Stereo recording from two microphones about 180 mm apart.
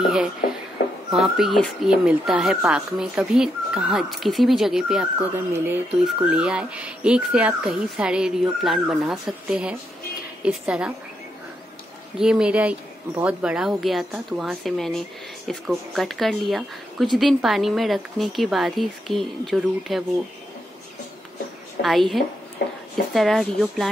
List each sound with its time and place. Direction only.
0.4 s a sound: 55° left (ahead or behind)
1.1 s speech: 5° right (ahead or behind)
12.2 s speech: 5° right (ahead or behind)
21.8 s a woman's voice: 65° left (ahead or behind)
23.1 s speech: centre (ahead or behind)